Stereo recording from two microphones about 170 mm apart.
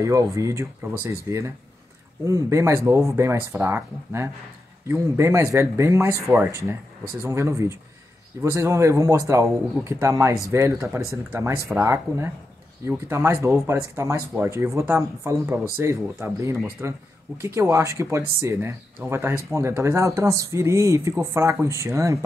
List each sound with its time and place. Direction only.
0.0 s speech: 20° right (ahead or behind)